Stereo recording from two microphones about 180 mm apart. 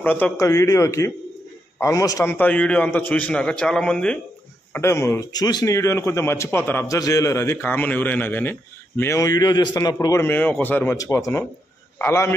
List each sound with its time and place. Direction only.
0.0 s speech: 10° left (ahead or behind)